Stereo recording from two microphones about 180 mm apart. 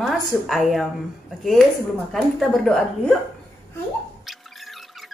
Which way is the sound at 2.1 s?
Centre (ahead or behind).